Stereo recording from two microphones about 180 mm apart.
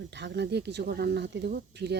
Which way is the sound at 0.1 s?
70° right (ahead or behind).